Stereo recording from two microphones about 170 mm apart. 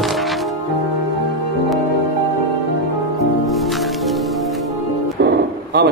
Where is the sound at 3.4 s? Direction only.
Centre (ahead or behind).